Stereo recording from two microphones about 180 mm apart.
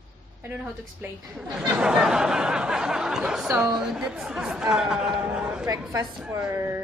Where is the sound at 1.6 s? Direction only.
5° right (ahead or behind).